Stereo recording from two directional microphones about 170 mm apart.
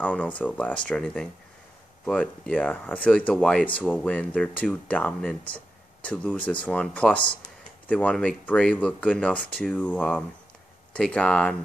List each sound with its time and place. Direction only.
0.0 s speech: 10° left (ahead or behind)